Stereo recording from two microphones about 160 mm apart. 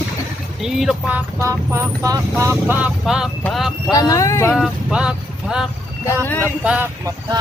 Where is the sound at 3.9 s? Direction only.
20° left (ahead or behind).